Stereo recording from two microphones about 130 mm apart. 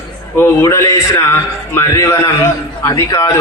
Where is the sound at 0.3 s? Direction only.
25° left (ahead or behind).